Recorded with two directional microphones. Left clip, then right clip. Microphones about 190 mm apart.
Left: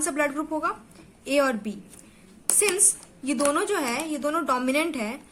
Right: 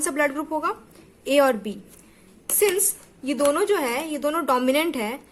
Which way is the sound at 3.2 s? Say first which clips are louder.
Right 3 dB; 15° right (ahead or behind).